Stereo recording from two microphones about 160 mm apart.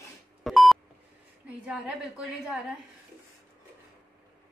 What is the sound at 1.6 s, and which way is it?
Speech, 5° right (ahead or behind).